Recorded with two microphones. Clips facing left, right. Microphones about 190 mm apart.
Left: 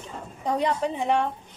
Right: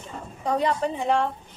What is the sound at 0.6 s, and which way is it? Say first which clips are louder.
Speech: even; 20° left (ahead or behind).